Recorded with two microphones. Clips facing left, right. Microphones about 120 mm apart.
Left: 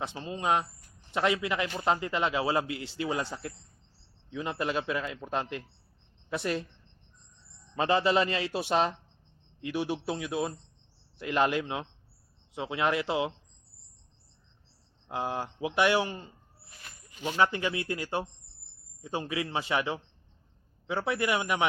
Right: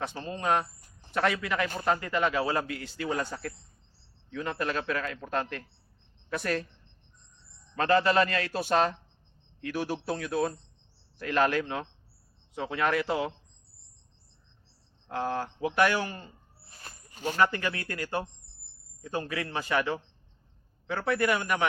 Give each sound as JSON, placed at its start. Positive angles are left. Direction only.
{"t": 0.2, "sound": "a man's voice", "side_deg": 15}
{"t": 3.0, "sound": "a man's voice", "side_deg": 15}
{"t": 4.3, "sound": "a man's voice", "side_deg": 15}
{"t": 7.8, "sound": "a man's voice", "side_deg": 20}
{"t": 15.1, "sound": "a man's voice", "side_deg": 15}
{"t": 16.6, "sound": "a sound", "side_deg": -35}
{"t": 17.3, "sound": "a man's voice", "side_deg": 20}